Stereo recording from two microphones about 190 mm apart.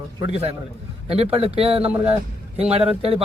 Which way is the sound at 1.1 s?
30° right (ahead or behind).